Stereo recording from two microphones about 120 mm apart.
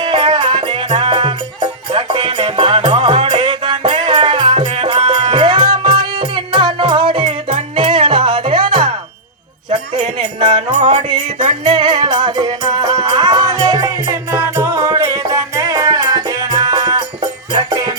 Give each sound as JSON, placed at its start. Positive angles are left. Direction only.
{"t": 0.0, "sound": "music", "side_deg": -45}
{"t": 9.6, "sound": "a sound", "side_deg": -40}
{"t": 10.2, "sound": "music", "side_deg": -40}
{"t": 10.7, "sound": "music", "side_deg": -75}
{"t": 11.6, "sound": "music", "side_deg": -40}